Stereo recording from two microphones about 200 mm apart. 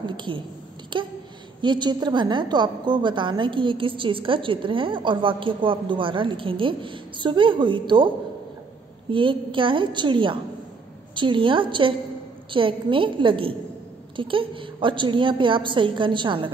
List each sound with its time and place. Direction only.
0.0 s a woman's voice: 25° right (ahead or behind)
9.1 s a woman's voice: 25° right (ahead or behind)